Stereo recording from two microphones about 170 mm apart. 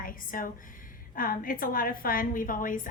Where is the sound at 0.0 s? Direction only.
55° left (ahead or behind).